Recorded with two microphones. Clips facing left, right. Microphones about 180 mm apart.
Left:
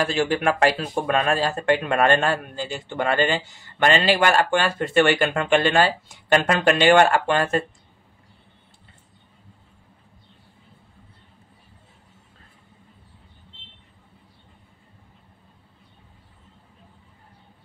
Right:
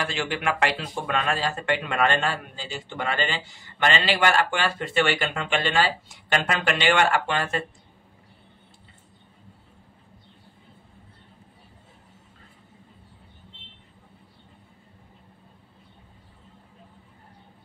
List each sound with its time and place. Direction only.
0.0 s speech: 40° left (ahead or behind)